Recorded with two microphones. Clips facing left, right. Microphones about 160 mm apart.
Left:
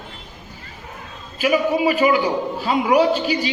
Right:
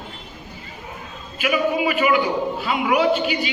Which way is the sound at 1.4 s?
35° left (ahead or behind).